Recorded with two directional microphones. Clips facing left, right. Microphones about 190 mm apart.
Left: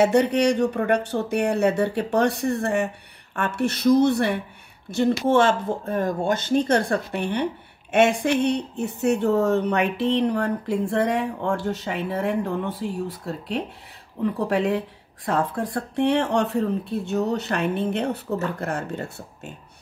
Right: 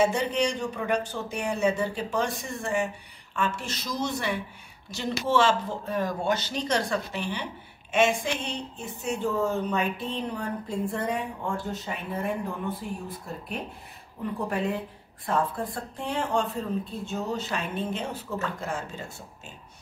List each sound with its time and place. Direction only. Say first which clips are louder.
0.0 s speech: left 6 dB; 65° left (ahead or behind)
14.5 s a woman's voice: left 6 dB; 80° left; by 19.5 s 65° left (ahead or behind)